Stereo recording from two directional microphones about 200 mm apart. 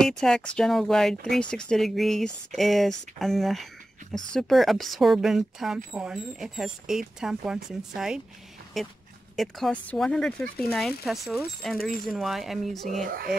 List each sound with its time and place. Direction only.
0.2 s speech: 5° left (ahead or behind)
13.0 s speech: 45° right (ahead or behind)